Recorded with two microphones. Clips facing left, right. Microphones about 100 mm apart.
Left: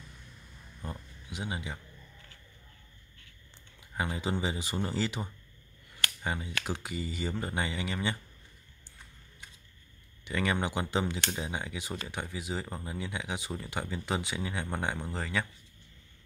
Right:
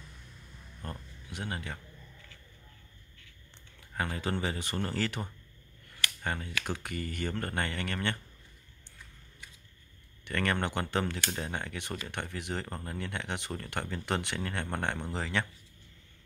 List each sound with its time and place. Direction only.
0.8 s a sound: 10° left (ahead or behind)
3.9 s speech: 10° left (ahead or behind)
10.2 s speech: 10° left (ahead or behind)